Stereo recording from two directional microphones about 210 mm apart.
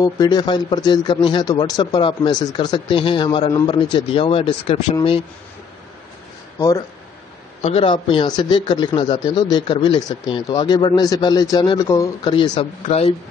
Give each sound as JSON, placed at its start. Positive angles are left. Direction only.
{"t": 0.0, "sound": "a man's voice", "side_deg": 20}
{"t": 7.6, "sound": "a man's voice", "side_deg": 25}